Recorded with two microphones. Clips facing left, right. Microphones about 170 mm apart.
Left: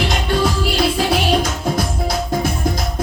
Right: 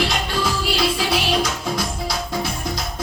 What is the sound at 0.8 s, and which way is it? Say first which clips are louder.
Music: left 4 dB; 50° left (ahead or behind).